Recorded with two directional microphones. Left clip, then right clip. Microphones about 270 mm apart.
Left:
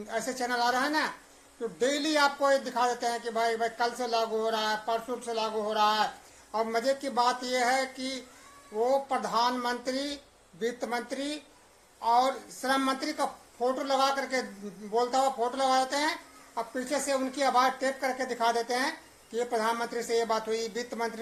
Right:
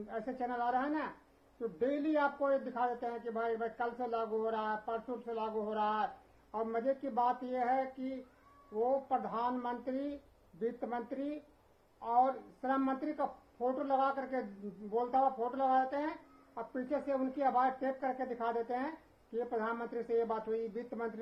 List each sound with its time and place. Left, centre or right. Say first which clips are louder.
0.1 s speech: left 8 dB; centre